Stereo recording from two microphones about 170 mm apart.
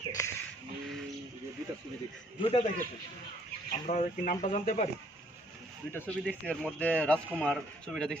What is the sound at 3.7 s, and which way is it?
Speech, 45° left (ahead or behind).